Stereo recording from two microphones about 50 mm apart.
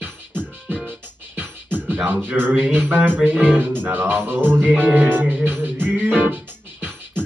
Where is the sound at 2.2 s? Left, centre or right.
Right.